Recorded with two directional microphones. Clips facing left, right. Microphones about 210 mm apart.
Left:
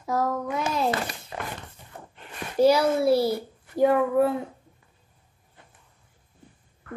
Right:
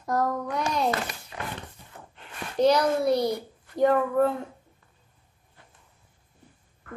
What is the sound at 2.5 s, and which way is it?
A child's voice, 5° left (ahead or behind).